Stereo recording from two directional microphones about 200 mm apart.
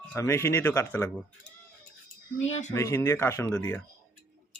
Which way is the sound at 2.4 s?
35° left (ahead or behind).